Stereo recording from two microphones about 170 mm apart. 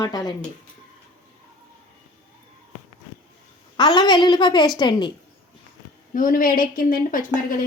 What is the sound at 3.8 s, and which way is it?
A woman's voice, 25° left (ahead or behind).